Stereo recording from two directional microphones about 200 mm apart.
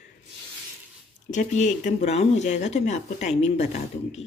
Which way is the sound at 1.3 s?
35° left (ahead or behind).